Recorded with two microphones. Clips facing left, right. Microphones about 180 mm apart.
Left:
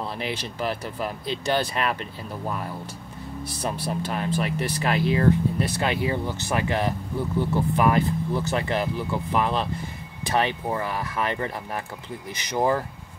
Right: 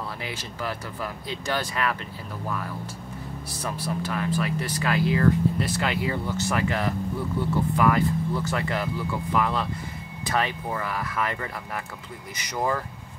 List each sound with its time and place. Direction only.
0.2 s speech: 25° left (ahead or behind)